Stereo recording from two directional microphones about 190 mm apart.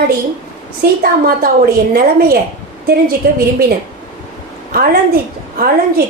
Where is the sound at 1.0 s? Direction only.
50° right (ahead or behind).